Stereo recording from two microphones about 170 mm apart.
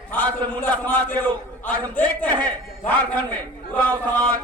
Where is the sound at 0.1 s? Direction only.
10° left (ahead or behind).